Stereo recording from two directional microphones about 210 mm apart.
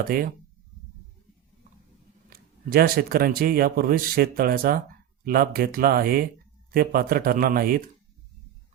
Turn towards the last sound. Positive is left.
turn(degrees=-45)  # may be behind; listen again after turning